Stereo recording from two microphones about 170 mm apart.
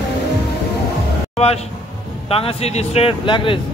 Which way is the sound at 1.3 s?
35° left (ahead or behind).